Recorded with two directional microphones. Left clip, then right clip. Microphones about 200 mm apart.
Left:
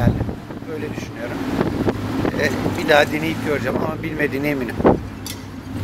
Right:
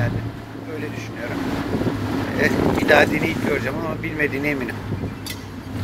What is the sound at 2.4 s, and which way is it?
Speech, 20° left (ahead or behind).